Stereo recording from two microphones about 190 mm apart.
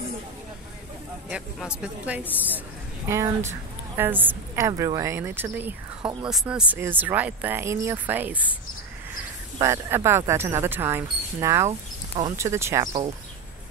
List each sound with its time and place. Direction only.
1.3 s speech: 5° right (ahead or behind)
9.6 s speech: 15° right (ahead or behind)